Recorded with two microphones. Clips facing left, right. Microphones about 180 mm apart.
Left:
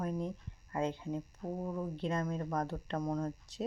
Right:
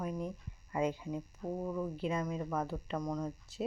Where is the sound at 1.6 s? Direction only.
20° left (ahead or behind).